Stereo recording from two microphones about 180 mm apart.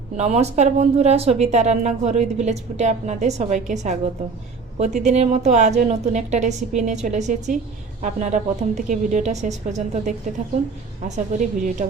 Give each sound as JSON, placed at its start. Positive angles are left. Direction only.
{"t": 0.2, "sound": "a woman's voice", "side_deg": -35}